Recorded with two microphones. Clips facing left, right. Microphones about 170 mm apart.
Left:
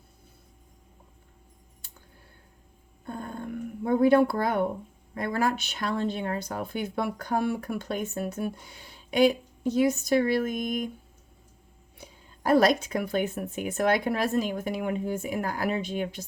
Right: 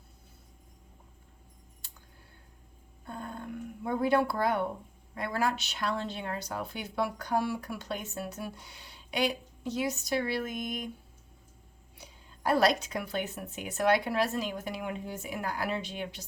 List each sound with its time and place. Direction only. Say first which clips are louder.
3.1 s a sound: left 4 dB; 50° left (ahead or behind)
5.1 s speech: left 4 dB; 50° left (ahead or behind)
11.9 s speech: left 4 dB; 50° left (ahead or behind)